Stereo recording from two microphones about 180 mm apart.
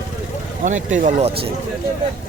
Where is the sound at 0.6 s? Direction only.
40° right (ahead or behind).